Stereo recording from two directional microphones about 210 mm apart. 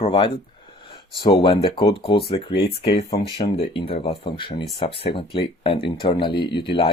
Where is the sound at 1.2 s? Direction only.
25° left (ahead or behind).